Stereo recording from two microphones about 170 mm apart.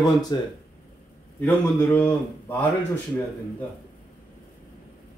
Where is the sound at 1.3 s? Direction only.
10° left (ahead or behind).